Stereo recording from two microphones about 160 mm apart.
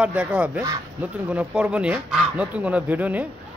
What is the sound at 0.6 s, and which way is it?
Speech, 20° right (ahead or behind).